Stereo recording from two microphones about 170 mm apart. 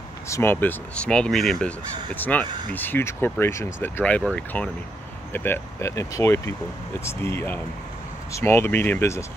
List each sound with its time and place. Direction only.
0.3 s speech: 15° left (ahead or behind)